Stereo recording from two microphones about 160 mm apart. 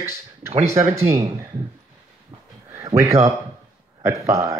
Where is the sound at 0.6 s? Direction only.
20° right (ahead or behind).